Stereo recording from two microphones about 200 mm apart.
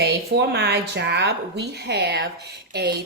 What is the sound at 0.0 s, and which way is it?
A woman's voice, 55° right (ahead or behind).